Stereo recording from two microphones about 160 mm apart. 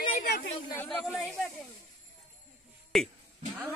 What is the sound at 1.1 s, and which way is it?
Snake, 10° left (ahead or behind).